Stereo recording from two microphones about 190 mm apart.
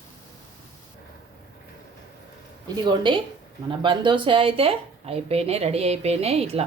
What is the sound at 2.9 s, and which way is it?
Speech, 25° right (ahead or behind).